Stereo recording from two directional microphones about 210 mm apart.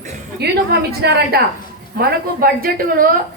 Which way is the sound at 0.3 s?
50° right (ahead or behind).